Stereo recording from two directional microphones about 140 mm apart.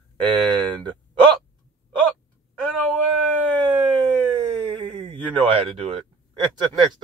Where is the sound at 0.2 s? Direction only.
35° right (ahead or behind).